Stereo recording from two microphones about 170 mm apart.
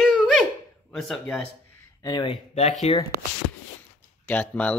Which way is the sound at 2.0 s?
25° left (ahead or behind).